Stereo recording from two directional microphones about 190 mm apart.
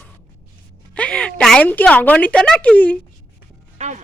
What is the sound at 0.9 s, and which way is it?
A woman's voice, 5° left (ahead or behind).